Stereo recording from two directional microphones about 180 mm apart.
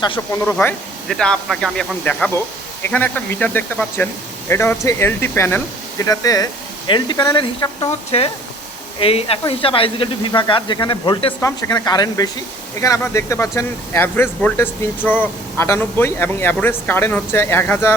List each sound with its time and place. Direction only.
0.4 s speech: 10° left (ahead or behind); by 11.3 s 30° left (ahead or behind)
11.3 s speech: 20° left (ahead or behind)